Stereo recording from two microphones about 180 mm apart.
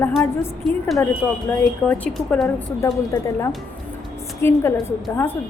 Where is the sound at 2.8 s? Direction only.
15° left (ahead or behind).